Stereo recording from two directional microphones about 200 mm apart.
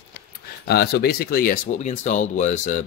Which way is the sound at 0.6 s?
55° left (ahead or behind).